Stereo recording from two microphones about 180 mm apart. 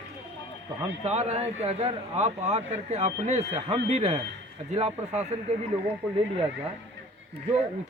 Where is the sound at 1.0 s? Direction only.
35° right (ahead or behind).